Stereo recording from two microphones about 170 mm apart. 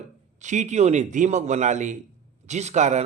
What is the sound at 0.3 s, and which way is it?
Speech, 45° right (ahead or behind).